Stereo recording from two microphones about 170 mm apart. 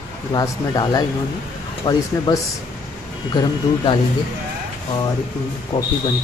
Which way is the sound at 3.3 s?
25° left (ahead or behind).